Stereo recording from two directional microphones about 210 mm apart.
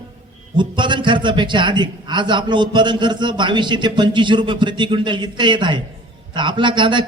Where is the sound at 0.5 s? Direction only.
20° right (ahead or behind).